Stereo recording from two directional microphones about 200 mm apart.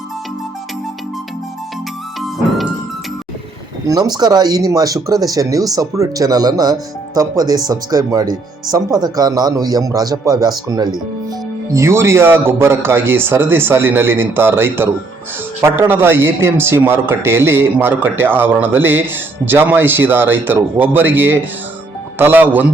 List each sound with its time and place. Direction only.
3.8 s a man's voice: 20° right (ahead or behind)